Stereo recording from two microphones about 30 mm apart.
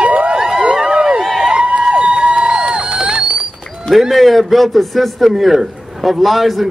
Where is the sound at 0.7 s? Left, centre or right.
Right.